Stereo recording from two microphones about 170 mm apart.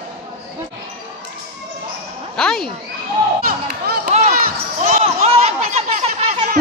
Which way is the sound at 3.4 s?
60° right (ahead or behind).